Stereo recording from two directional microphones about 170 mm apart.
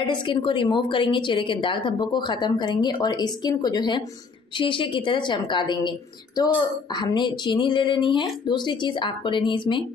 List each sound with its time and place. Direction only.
0.0 s a woman's voice: 30° left (ahead or behind)